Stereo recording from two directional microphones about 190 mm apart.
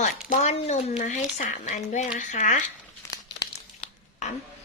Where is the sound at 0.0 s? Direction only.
35° left (ahead or behind).